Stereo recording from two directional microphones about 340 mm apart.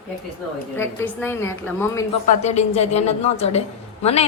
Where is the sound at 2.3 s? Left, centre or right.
Centre.